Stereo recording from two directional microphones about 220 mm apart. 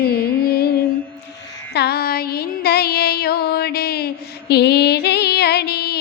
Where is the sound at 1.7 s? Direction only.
45° left (ahead or behind).